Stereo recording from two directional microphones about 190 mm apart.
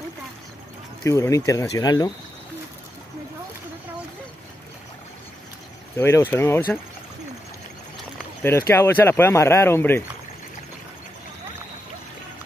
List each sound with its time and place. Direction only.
1.0 s speech: 15° left (ahead or behind)
5.9 s speech: 15° left (ahead or behind)
8.4 s speech: 15° left (ahead or behind)